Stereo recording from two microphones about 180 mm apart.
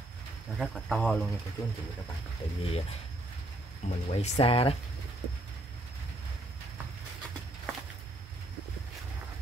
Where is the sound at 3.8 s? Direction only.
35° left (ahead or behind).